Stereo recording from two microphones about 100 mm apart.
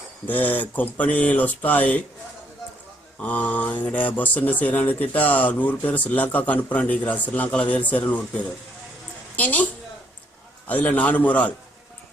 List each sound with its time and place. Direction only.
0.3 s speech: 15° left (ahead or behind)
3.2 s a woman's voice: 15° left (ahead or behind)
10.7 s speech: 15° left (ahead or behind)